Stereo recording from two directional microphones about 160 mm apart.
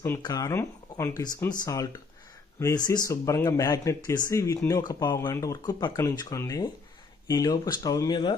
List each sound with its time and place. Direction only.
0.2 s speech: 20° left (ahead or behind)